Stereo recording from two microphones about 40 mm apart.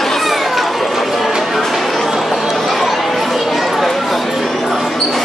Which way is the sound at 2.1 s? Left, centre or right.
Centre.